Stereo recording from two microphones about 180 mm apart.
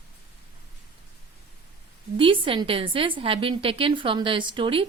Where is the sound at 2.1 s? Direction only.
30° right (ahead or behind).